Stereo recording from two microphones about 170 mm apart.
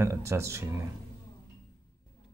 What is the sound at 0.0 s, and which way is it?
Speech, 15° right (ahead or behind).